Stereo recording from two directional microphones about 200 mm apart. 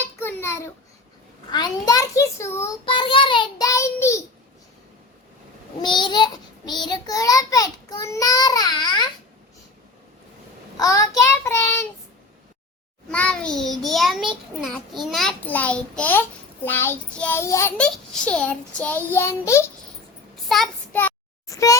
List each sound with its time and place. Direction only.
0.2 s a sound: 10° left (ahead or behind)
1.5 s a child's voice: 20° left (ahead or behind)
2.8 s child singing: 25° left (ahead or behind)
5.8 s child singing: 20° left (ahead or behind)
10.8 s a child's voice: 15° left (ahead or behind)
13.1 s a child's voice: 5° left (ahead or behind)
20.5 s child singing: 5° left (ahead or behind)